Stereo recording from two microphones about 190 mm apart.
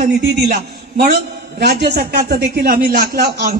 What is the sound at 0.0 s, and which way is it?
A man's voice, 45° right (ahead or behind).